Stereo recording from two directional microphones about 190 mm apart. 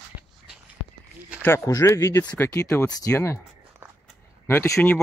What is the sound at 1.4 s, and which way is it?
Speech, 15° left (ahead or behind).